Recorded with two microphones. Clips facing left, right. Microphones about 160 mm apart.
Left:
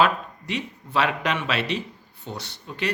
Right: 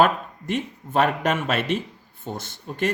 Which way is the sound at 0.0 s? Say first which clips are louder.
Right 2 dB; 50° right (ahead or behind).